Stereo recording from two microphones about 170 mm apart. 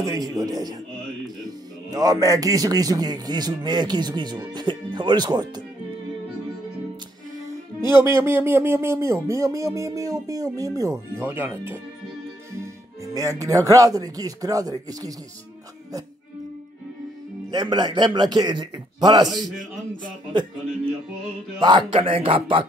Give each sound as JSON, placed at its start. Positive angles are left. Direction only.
{"t": 0.0, "sound": "a man's voice", "side_deg": -20}
{"t": 1.9, "sound": "a man's voice", "side_deg": -20}
{"t": 7.9, "sound": "speech", "side_deg": -15}
{"t": 13.0, "sound": "a man's voice", "side_deg": -20}
{"t": 17.5, "sound": "a man's voice", "side_deg": -25}
{"t": 21.5, "sound": "speech", "side_deg": -30}